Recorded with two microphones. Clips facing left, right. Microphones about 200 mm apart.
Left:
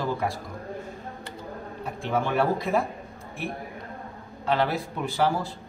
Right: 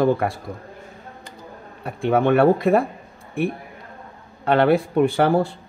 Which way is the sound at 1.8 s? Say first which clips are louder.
Right 8 dB; 60° right (ahead or behind).